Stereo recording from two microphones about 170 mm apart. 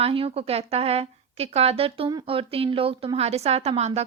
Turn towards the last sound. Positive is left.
turn(degrees=-40)  # may be behind; listen again after turning